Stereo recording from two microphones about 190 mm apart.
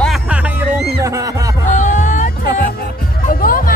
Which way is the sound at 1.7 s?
40° left (ahead or behind).